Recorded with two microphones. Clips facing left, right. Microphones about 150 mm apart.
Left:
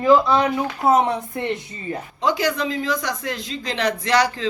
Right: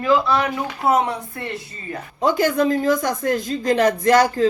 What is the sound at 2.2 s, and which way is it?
Speech, 50° right (ahead or behind).